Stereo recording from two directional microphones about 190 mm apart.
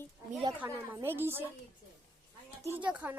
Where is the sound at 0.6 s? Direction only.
15° right (ahead or behind).